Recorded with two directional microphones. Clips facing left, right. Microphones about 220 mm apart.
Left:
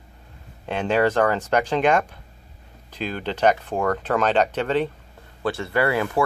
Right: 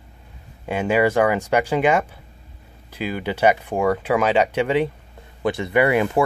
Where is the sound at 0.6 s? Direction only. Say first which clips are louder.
Right 2 dB; 10° right (ahead or behind).